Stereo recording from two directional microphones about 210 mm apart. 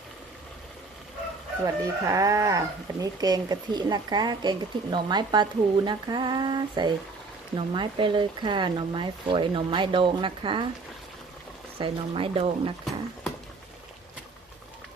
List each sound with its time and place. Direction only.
1.6 s speech: 15° right (ahead or behind)
11.8 s speech: 25° right (ahead or behind)